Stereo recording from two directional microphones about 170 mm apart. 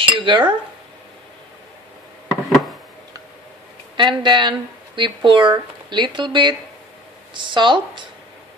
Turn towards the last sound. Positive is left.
turn(degrees=-30)  # may be behind; listen again after turning